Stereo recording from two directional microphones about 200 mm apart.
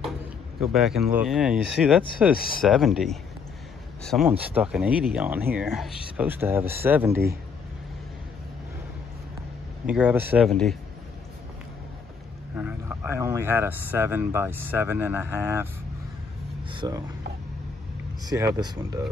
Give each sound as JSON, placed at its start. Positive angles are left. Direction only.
{"t": 0.6, "sound": "speech", "side_deg": 0}
{"t": 9.8, "sound": "speech", "side_deg": -5}
{"t": 10.5, "sound": "speech", "side_deg": 5}
{"t": 12.5, "sound": "speech", "side_deg": -10}
{"t": 16.7, "sound": "speech", "side_deg": -20}
{"t": 18.2, "sound": "speech", "side_deg": -15}